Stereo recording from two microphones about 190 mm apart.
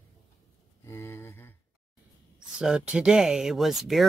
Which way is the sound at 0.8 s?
15° left (ahead or behind).